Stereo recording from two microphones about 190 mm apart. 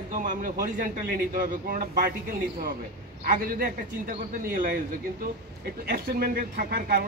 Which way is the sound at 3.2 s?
50° right (ahead or behind).